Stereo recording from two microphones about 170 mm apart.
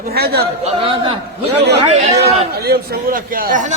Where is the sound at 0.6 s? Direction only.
35° right (ahead or behind).